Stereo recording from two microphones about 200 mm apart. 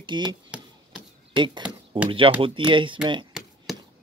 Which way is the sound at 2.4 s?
25° right (ahead or behind).